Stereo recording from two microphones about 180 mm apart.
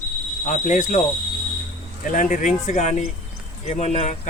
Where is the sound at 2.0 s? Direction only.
45° left (ahead or behind).